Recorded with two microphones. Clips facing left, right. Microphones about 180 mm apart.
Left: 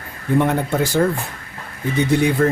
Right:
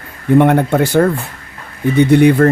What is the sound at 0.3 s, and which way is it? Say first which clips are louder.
Speech: right 7 dB; 65° right (ahead or behind).